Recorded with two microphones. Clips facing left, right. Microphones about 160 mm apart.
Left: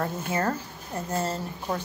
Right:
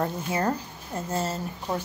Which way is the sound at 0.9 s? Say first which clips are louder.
Even; 25° right (ahead or behind).